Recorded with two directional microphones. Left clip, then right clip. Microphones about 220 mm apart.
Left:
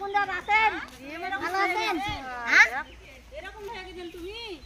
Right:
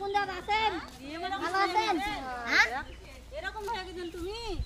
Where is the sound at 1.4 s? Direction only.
40° left (ahead or behind).